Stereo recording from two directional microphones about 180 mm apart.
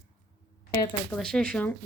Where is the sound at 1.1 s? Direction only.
5° left (ahead or behind).